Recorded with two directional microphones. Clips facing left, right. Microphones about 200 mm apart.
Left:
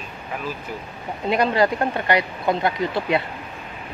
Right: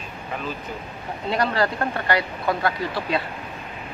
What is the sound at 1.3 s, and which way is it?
Speech, 15° left (ahead or behind).